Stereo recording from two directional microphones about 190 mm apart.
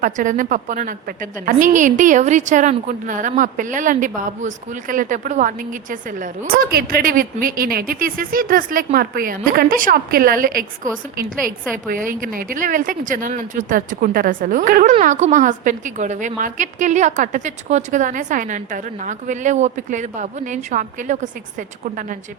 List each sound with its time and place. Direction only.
0.0 s a woman's voice: 45° right (ahead or behind)